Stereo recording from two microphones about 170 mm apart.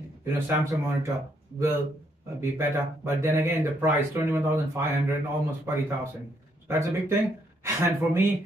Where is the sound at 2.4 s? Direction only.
15° right (ahead or behind).